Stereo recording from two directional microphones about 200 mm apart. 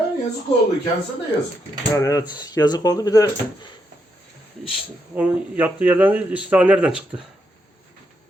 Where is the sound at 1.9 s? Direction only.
15° left (ahead or behind).